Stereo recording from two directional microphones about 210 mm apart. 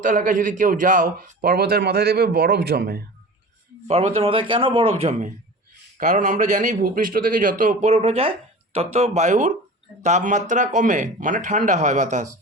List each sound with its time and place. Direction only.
0.0 s a man's voice: 35° right (ahead or behind)
3.8 s a man's voice: 30° right (ahead or behind)